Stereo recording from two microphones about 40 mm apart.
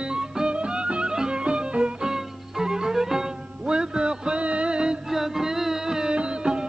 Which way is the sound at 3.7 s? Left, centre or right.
Right.